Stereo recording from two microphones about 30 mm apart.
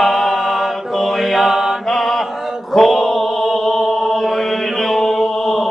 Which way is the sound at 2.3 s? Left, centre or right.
Centre.